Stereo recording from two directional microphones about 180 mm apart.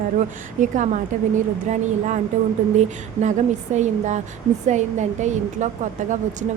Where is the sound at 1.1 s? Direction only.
45° right (ahead or behind).